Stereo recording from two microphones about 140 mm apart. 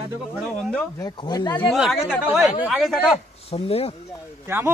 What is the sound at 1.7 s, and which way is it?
A man's voice, centre (ahead or behind).